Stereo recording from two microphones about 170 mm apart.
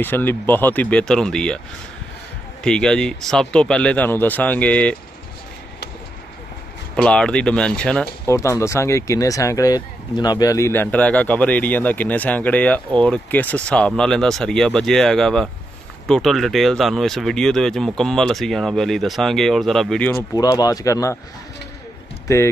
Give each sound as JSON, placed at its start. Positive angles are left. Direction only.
{"t": 0.0, "sound": "speech", "side_deg": 10}
{"t": 2.6, "sound": "speech", "side_deg": 5}
{"t": 7.0, "sound": "speech", "side_deg": 5}
{"t": 8.3, "sound": "speech", "side_deg": 15}
{"t": 20.3, "sound": "speech", "side_deg": 20}